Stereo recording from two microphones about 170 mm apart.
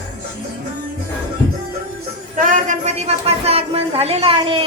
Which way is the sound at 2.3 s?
50° right (ahead or behind).